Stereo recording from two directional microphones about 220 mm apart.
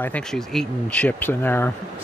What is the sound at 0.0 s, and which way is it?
Speech, 5° left (ahead or behind).